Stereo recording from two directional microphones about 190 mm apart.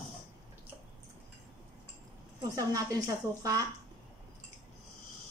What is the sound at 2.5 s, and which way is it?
Speech, 15° right (ahead or behind).